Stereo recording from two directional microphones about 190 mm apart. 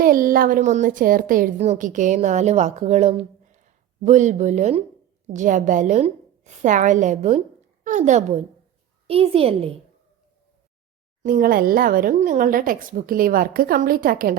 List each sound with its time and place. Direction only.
0.0 s a woman's voice: 45° right (ahead or behind); by 9.7 s 30° right (ahead or behind)
11.2 s speech: 45° right (ahead or behind)